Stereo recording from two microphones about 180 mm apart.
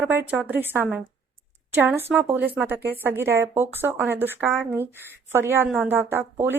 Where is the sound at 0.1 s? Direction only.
10° right (ahead or behind).